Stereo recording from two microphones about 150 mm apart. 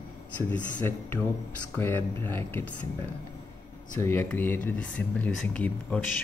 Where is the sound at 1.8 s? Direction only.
15° left (ahead or behind).